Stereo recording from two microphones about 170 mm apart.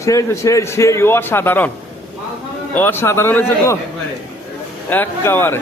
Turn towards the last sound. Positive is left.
turn(degrees=15)  # may be behind; listen again after turning